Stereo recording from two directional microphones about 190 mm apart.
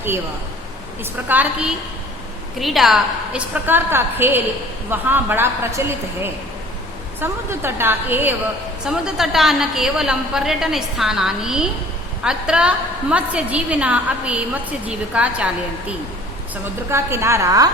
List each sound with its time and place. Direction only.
1.3 s a woman's voice: 10° right (ahead or behind)
7.2 s a woman's voice: 10° right (ahead or behind)
16.9 s a woman's voice: 15° right (ahead or behind)